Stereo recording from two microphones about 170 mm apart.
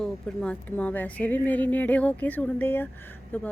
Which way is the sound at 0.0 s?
5° left (ahead or behind).